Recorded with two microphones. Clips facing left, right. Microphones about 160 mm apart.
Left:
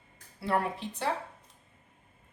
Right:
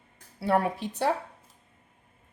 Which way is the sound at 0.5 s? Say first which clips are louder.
Right 4 dB; 45° right (ahead or behind).